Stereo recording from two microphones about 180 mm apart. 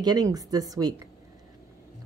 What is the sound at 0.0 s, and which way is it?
Speech, 20° right (ahead or behind).